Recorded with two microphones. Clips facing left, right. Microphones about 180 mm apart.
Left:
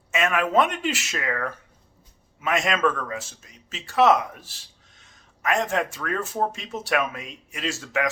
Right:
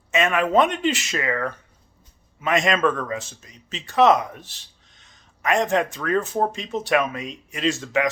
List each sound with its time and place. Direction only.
0.1 s speech: 5° left (ahead or behind)